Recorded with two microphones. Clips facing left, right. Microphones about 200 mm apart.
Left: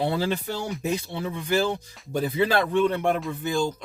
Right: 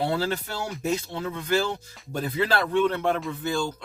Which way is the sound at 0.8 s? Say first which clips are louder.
Even; 15° left (ahead or behind).